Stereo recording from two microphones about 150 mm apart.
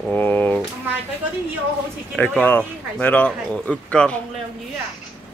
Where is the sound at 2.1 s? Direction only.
10° left (ahead or behind).